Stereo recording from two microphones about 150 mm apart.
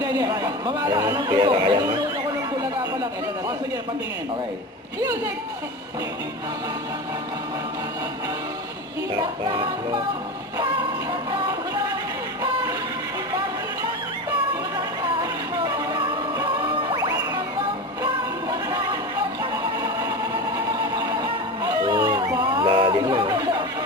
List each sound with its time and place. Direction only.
0.0 s a man's voice: 25° right (ahead or behind)
9.4 s music: 35° right (ahead or behind)
12.4 s music: 25° right (ahead or behind)
15.2 s music: 25° right (ahead or behind)
19.4 s a sound: 25° right (ahead or behind)
20.7 s music: 25° right (ahead or behind)